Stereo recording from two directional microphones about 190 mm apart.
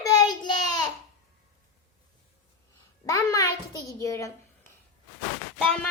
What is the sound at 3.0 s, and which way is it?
Child singing, 15° left (ahead or behind).